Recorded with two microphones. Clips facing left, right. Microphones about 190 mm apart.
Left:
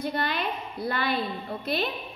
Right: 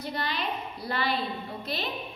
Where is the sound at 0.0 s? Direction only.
55° left (ahead or behind).